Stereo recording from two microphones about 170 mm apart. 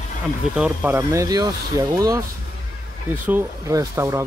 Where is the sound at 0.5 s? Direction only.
10° right (ahead or behind).